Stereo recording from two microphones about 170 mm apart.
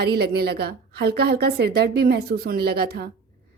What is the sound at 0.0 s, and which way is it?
A woman's voice, 70° right (ahead or behind).